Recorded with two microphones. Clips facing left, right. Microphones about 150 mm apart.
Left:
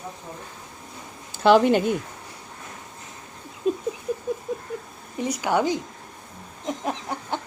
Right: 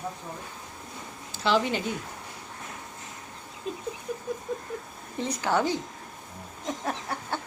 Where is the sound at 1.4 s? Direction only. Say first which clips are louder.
Left 9 dB; 55° left (ahead or behind).